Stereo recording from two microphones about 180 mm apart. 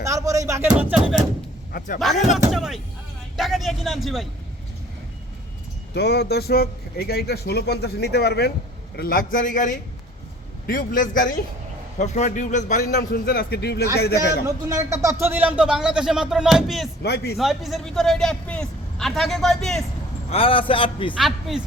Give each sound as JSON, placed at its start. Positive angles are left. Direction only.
{"t": 0.0, "sound": "a sound", "side_deg": -20}
{"t": 2.0, "sound": "speech", "side_deg": 0}
{"t": 5.9, "sound": "speech", "side_deg": 65}
{"t": 9.0, "sound": "speech", "side_deg": 55}
{"t": 12.9, "sound": "speech", "side_deg": 60}
{"t": 14.4, "sound": "speech", "side_deg": -20}
{"t": 17.0, "sound": "speech", "side_deg": 65}
{"t": 17.3, "sound": "speech", "side_deg": 0}
{"t": 20.3, "sound": "a man's voice", "side_deg": 30}
{"t": 21.2, "sound": "speech", "side_deg": 0}